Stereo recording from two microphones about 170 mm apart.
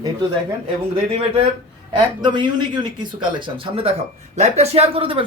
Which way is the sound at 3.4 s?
30° right (ahead or behind).